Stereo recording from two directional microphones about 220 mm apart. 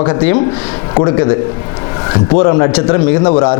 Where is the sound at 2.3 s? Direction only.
25° left (ahead or behind).